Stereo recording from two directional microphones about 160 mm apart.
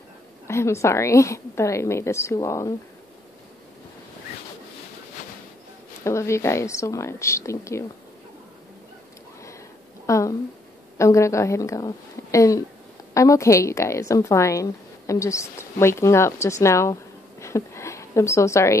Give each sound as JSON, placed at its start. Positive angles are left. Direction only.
{"t": 0.5, "sound": "a woman's voice", "side_deg": 15}
{"t": 6.0, "sound": "a woman's voice", "side_deg": 15}
{"t": 10.0, "sound": "a sound", "side_deg": 20}
{"t": 11.0, "sound": "a woman's voice", "side_deg": 20}